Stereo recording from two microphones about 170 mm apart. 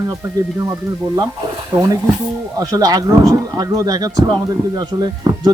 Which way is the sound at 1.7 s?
20° right (ahead or behind).